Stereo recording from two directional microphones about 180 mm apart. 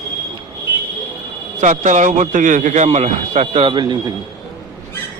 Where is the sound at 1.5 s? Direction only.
45° right (ahead or behind); by 4.1 s 25° right (ahead or behind).